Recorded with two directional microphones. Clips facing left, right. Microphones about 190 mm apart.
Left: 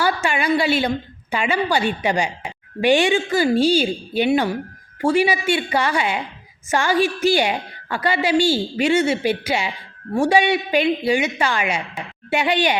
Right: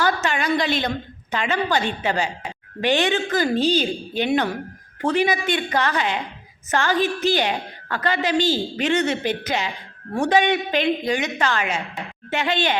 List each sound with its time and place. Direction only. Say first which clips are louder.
0.0 s a woman's voice: left 1 dB; 10° left (ahead or behind)